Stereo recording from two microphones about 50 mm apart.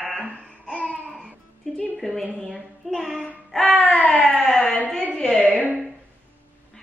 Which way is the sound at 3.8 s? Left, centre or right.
Left.